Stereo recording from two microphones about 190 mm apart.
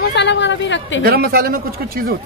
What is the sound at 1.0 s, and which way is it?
Speech, 55° right (ahead or behind).